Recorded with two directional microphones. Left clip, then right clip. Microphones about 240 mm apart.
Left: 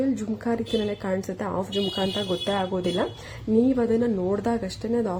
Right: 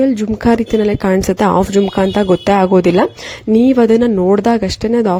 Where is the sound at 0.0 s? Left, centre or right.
Right.